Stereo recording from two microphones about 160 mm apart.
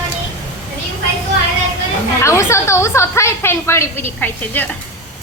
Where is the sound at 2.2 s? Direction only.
15° left (ahead or behind).